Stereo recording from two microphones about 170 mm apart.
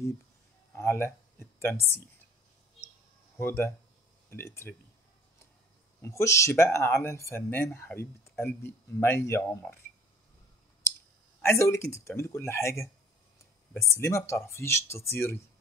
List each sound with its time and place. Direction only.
0.7 s speech: 15° left (ahead or behind)
3.3 s speech: 15° left (ahead or behind)
5.9 s speech: 15° left (ahead or behind)
11.4 s speech: 15° left (ahead or behind)
13.7 s speech: 15° left (ahead or behind)